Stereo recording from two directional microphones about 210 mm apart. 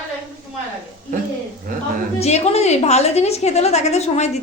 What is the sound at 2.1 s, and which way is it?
A woman's voice, 30° left (ahead or behind).